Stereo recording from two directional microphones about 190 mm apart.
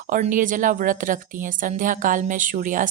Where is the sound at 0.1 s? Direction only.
45° right (ahead or behind).